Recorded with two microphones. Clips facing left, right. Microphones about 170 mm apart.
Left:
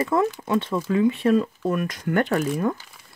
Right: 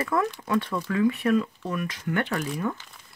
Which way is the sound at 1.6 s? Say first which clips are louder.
Left 6 dB; 45° left (ahead or behind).